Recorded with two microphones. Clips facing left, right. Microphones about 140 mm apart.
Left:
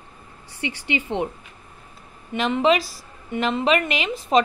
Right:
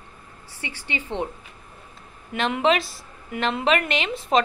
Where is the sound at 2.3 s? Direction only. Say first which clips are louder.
Left 2 dB; centre (ahead or behind).